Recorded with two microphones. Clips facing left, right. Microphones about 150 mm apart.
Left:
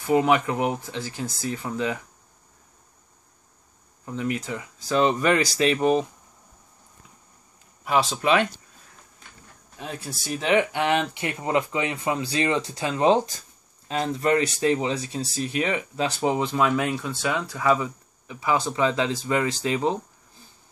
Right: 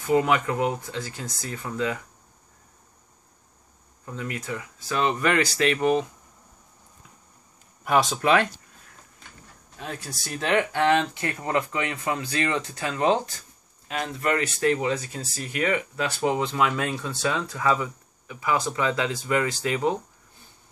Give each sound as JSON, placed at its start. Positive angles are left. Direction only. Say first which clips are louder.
{"t": 0.1, "sound": "speech", "louder": "left 1 dB", "side_deg": 20}
{"t": 4.0, "sound": "speech", "louder": "left 5 dB", "side_deg": 20}
{"t": 7.8, "sound": "speech", "louder": "right 1 dB", "side_deg": 0}
{"t": 8.2, "sound": "speech", "louder": "left 1 dB", "side_deg": 20}
{"t": 10.0, "sound": "speech", "louder": "left 3 dB", "side_deg": 15}